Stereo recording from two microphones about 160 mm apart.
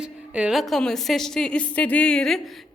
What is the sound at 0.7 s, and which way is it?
Speech, centre (ahead or behind).